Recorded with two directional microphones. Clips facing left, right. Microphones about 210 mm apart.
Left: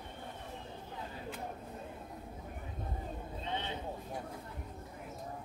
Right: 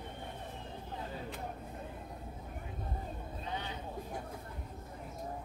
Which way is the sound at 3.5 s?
25° left (ahead or behind).